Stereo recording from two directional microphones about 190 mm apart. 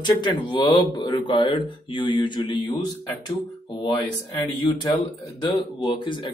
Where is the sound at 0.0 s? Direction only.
25° left (ahead or behind).